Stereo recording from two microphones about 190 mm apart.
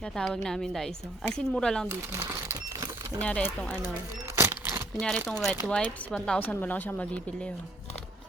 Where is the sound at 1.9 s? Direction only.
15° right (ahead or behind).